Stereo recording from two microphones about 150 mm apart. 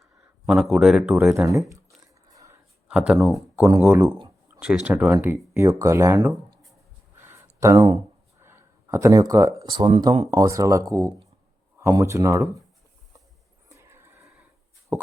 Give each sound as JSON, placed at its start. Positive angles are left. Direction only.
{"t": 0.4, "sound": "speech", "side_deg": -5}
{"t": 2.8, "sound": "speech", "side_deg": -5}
{"t": 4.6, "sound": "speech", "side_deg": -5}
{"t": 7.2, "sound": "a sound", "side_deg": -20}
{"t": 9.6, "sound": "speech", "side_deg": -30}
{"t": 13.7, "sound": "a sound", "side_deg": -20}